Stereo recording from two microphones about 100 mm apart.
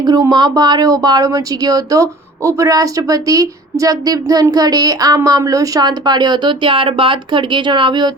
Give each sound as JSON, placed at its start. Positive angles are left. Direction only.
{"t": 0.0, "sound": "a woman's voice", "side_deg": -45}